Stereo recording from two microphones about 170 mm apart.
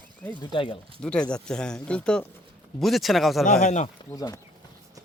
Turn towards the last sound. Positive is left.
turn(degrees=20)  # may be behind; listen again after turning